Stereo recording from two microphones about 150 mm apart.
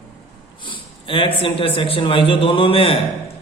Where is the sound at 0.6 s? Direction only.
35° left (ahead or behind).